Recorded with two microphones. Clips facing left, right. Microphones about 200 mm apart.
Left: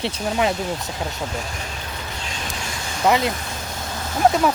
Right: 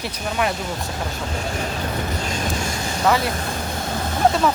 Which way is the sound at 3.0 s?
20° left (ahead or behind).